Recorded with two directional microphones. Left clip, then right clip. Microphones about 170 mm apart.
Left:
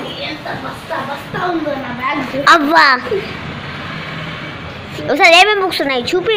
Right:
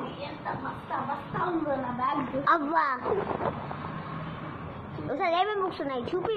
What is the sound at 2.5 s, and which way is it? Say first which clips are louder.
Speech: left 17 dB; 40° left (ahead or behind).